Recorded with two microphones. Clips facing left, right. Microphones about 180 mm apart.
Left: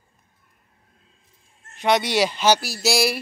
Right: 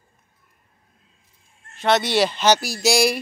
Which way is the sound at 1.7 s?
15° left (ahead or behind).